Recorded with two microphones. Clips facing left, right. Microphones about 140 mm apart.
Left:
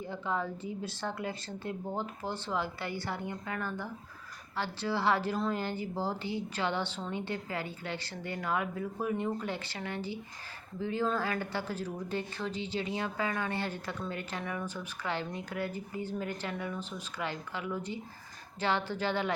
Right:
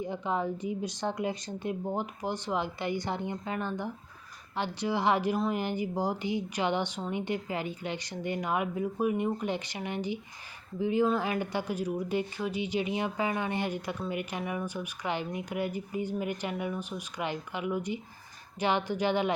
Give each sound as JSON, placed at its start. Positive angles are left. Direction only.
{"t": 0.0, "sound": "a woman's voice", "side_deg": -20}